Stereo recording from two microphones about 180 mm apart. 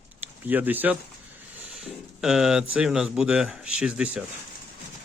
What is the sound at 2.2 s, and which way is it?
Speech, 5° right (ahead or behind).